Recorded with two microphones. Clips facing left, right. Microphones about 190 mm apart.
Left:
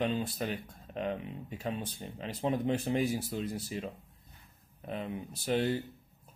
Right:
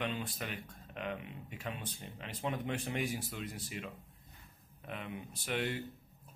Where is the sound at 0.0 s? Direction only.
35° left (ahead or behind).